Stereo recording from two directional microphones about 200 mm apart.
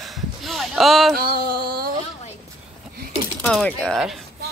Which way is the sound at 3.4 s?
Centre (ahead or behind).